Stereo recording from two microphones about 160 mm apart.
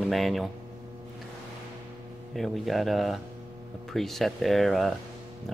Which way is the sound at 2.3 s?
Centre (ahead or behind).